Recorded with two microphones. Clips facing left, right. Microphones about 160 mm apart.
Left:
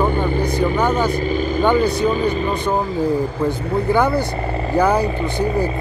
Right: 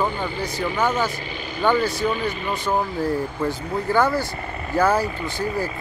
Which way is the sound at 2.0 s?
35° left (ahead or behind).